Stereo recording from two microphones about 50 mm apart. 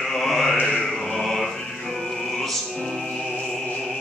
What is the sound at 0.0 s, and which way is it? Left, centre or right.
Music, centre.